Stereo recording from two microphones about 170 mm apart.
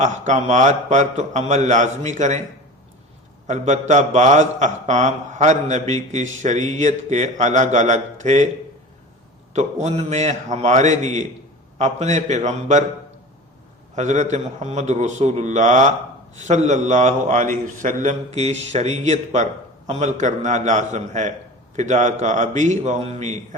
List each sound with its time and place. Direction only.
0.0 s a man's voice: 45° right (ahead or behind)
3.4 s a man's voice: 45° right (ahead or behind)
9.5 s a man's voice: 40° right (ahead or behind)
13.9 s a man's voice: 45° right (ahead or behind)